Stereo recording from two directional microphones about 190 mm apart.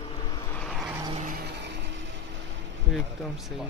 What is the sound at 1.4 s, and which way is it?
Vehicle, 65° right (ahead or behind).